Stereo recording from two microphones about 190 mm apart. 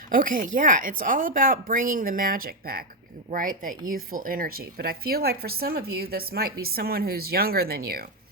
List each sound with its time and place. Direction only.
0.1 s speech: 45° right (ahead or behind)